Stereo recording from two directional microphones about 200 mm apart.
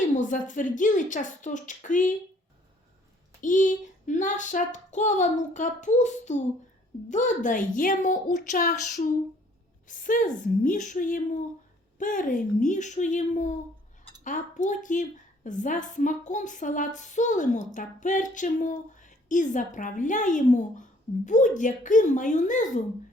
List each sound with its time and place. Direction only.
0.0 s speech: 40° left (ahead or behind)
3.4 s speech: 40° left (ahead or behind)